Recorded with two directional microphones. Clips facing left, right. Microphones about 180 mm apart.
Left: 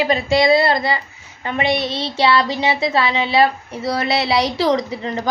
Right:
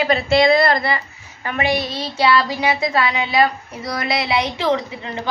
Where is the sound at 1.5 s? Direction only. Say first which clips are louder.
Left 1 dB; 25° left (ahead or behind).